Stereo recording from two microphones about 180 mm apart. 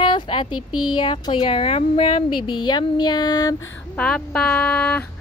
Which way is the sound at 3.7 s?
5° left (ahead or behind).